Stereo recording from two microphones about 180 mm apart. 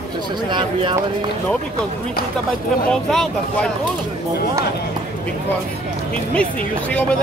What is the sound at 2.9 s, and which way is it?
Speech, 5° left (ahead or behind).